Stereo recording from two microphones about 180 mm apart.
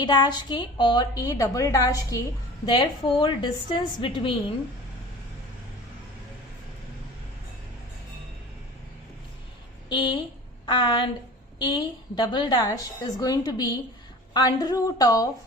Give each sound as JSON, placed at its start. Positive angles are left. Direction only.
{"t": 0.0, "sound": "a woman's voice", "side_deg": 25}
{"t": 9.9, "sound": "a woman's voice", "side_deg": 25}